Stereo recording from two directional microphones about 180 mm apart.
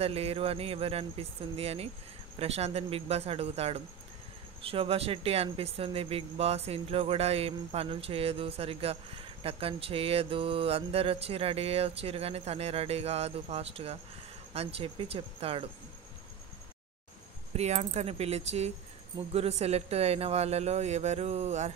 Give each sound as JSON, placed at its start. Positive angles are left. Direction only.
{"t": 0.0, "sound": "speech", "side_deg": -35}
{"t": 17.6, "sound": "speech", "side_deg": -35}